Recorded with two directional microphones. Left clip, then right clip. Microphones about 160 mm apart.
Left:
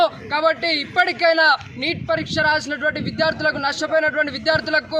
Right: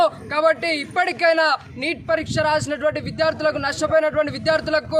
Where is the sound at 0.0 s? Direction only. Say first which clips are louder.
Even; 10° right (ahead or behind).